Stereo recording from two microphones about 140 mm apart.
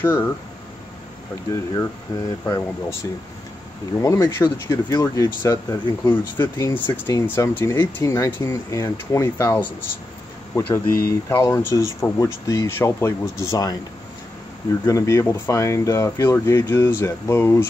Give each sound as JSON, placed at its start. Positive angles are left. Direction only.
{"t": 0.0, "sound": "speech", "side_deg": 15}
{"t": 1.5, "sound": "speech", "side_deg": 20}
{"t": 6.1, "sound": "speech", "side_deg": 15}
{"t": 10.9, "sound": "speech", "side_deg": 90}
{"t": 11.3, "sound": "speech", "side_deg": 25}
{"t": 14.9, "sound": "speech", "side_deg": 20}